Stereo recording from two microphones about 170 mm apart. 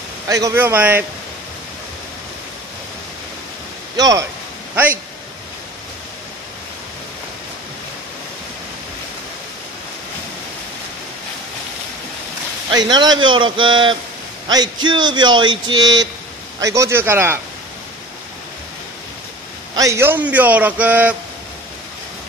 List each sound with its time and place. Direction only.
0.3 s a man's voice: 15° right (ahead or behind)
3.9 s speech: 20° right (ahead or behind)
12.7 s a man's voice: 25° right (ahead or behind)
19.7 s a man's voice: 20° right (ahead or behind)